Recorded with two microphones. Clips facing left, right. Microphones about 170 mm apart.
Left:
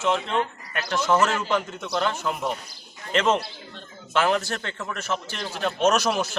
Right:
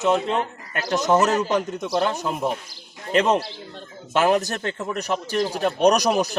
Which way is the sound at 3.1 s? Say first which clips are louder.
Right 3 dB; 15° right (ahead or behind).